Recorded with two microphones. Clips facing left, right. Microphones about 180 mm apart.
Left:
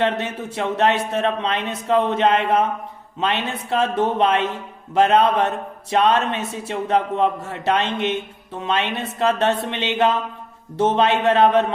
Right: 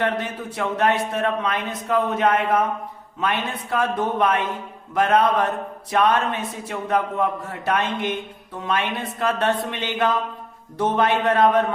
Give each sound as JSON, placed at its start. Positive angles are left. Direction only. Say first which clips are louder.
{"t": 0.0, "sound": "a man's voice", "louder": "left 2 dB", "side_deg": 25}